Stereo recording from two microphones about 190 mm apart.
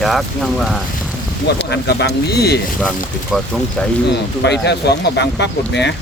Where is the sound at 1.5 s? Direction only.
60° left (ahead or behind).